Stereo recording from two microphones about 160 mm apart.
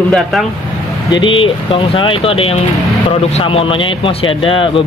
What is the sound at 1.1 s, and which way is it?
Speech, 30° left (ahead or behind).